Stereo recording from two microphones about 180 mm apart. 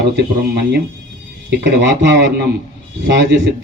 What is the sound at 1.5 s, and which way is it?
A man's voice, 75° right (ahead or behind).